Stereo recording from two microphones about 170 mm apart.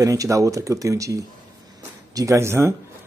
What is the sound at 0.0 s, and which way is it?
Speech, 20° right (ahead or behind).